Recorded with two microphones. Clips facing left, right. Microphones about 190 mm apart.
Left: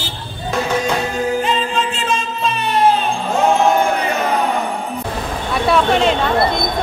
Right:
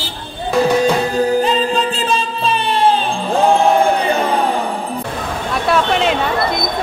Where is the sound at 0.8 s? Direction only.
35° right (ahead or behind).